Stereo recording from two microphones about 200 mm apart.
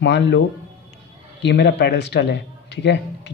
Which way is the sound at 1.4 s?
60° left (ahead or behind).